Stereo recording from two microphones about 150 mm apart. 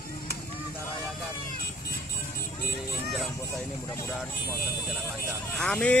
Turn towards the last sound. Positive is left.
turn(degrees=5)  # may be behind; listen again after turning